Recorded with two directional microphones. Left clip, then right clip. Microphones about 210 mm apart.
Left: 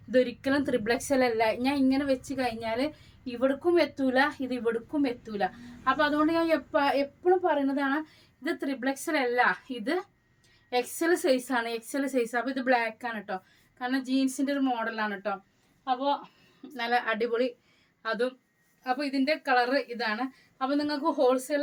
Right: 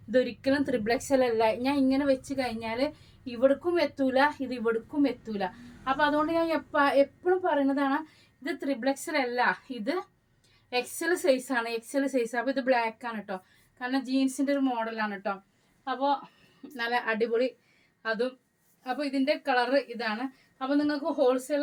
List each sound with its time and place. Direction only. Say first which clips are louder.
0.1 s a woman's voice: even; 20° left (ahead or behind)